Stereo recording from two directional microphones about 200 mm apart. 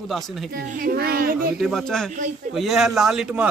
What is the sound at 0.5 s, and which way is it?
Speech, 45° right (ahead or behind).